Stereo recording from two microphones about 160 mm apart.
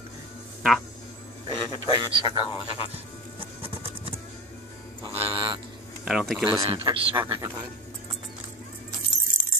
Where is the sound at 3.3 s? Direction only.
35° right (ahead or behind).